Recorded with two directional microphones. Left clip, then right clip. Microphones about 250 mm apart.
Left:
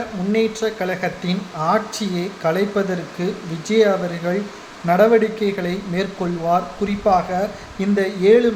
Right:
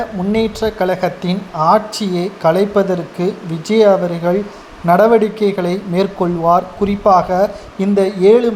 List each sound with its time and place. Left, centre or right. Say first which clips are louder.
0.3 s speech: right 3 dB; centre